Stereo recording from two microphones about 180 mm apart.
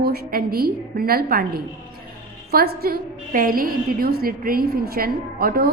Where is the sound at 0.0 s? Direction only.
60° right (ahead or behind).